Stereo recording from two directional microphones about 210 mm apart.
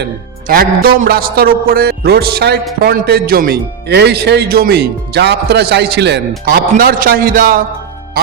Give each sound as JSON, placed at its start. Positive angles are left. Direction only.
{"t": 0.0, "sound": "a man's voice", "side_deg": -45}